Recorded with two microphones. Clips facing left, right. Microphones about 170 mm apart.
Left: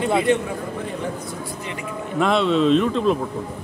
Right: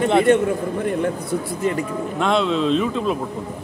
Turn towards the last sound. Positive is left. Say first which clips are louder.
# left 2 dB
turn(degrees=-5)  # may be behind; listen again after turning